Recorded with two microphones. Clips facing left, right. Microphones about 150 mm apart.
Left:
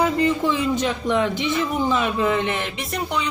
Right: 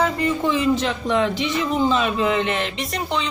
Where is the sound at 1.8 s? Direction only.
20° right (ahead or behind).